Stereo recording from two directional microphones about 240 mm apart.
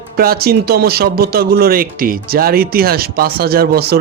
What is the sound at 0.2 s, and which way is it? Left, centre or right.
Speech, right.